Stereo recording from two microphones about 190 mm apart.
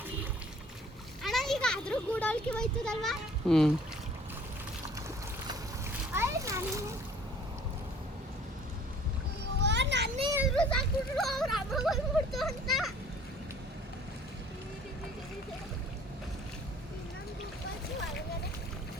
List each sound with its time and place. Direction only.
1.2 s a child's voice: centre (ahead or behind)
6.1 s splash: 15° right (ahead or behind)
9.6 s children playing: 65° right (ahead or behind)
10.5 s a sound: 5° left (ahead or behind)